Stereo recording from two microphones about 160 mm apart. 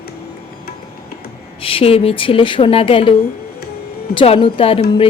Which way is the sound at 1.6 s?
35° left (ahead or behind).